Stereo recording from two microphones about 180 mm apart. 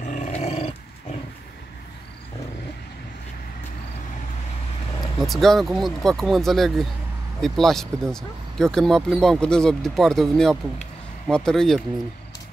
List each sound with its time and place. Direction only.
0.0 s dog: 45° left (ahead or behind)
5.2 s speech: centre (ahead or behind)